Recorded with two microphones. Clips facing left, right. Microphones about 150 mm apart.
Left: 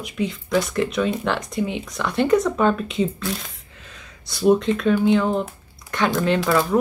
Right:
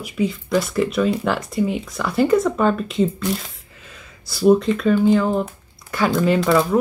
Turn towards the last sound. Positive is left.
turn(degrees=0)  # may be behind; listen again after turning